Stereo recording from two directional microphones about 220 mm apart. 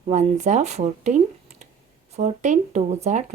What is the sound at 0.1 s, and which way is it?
Speech, 30° right (ahead or behind).